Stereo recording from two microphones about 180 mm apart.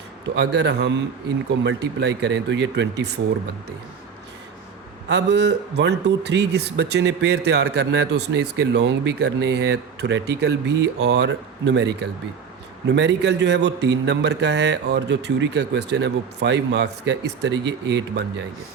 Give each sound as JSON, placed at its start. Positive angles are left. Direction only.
{"t": 0.3, "sound": "speech", "side_deg": -70}
{"t": 5.0, "sound": "speech", "side_deg": -70}